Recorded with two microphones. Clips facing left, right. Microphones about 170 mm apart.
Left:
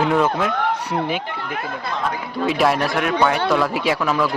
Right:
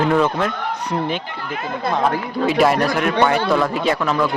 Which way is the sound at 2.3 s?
Centre (ahead or behind).